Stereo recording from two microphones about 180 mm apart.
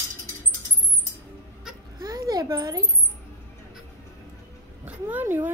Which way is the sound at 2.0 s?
20° right (ahead or behind).